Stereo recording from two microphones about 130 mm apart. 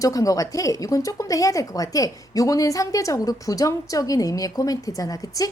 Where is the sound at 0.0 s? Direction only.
25° left (ahead or behind).